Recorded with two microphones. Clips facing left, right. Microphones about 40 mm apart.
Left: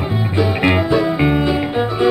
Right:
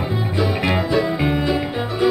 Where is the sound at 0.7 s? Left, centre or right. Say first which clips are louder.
Left 3 dB; centre.